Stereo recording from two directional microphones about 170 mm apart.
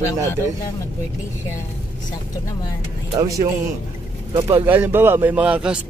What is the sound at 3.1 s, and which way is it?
Speech, 20° right (ahead or behind).